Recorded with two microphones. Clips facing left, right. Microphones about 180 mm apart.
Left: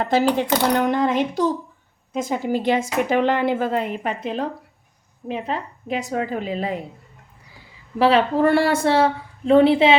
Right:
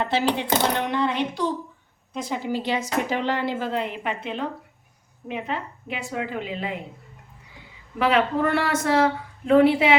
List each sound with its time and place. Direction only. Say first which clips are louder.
0.0 s a woman's voice: left 5 dB; 45° left (ahead or behind)
7.9 s a woman's voice: left 4 dB; 30° left (ahead or behind)